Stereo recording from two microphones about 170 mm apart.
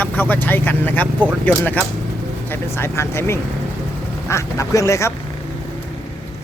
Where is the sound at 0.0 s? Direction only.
10° left (ahead or behind).